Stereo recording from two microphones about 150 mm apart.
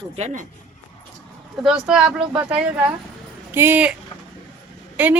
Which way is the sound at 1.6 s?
5° right (ahead or behind).